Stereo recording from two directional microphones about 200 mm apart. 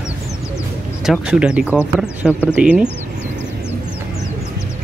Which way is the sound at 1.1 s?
5° right (ahead or behind).